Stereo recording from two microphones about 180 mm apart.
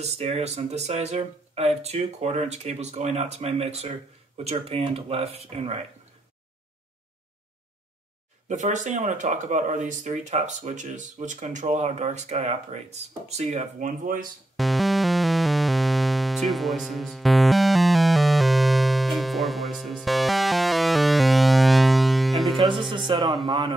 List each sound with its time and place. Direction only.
0.0 s speech: 35° right (ahead or behind)
8.5 s speech: 45° right (ahead or behind)
14.6 s music: centre (ahead or behind)
22.7 s music: 25° right (ahead or behind)
23.4 s a man's voice: 25° right (ahead or behind)